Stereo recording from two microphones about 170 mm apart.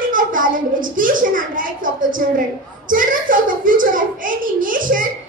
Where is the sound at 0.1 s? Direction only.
50° right (ahead or behind).